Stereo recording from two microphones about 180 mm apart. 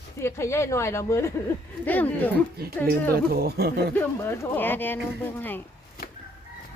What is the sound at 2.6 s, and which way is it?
Speech, 60° right (ahead or behind).